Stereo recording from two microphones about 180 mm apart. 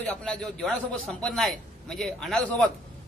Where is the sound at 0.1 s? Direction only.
5° left (ahead or behind).